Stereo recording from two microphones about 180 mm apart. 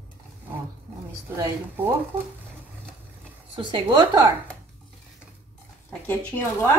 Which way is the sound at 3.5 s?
25° right (ahead or behind).